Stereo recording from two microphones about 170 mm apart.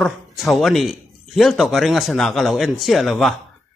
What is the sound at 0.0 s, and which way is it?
Speech, centre (ahead or behind).